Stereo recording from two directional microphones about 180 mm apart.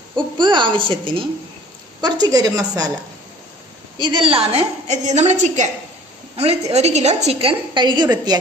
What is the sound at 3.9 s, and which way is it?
A woman's voice, 25° right (ahead or behind).